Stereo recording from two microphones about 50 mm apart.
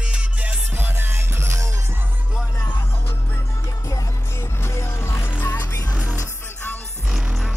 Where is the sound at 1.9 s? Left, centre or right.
Right.